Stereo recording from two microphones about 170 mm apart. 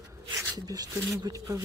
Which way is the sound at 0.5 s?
20° right (ahead or behind).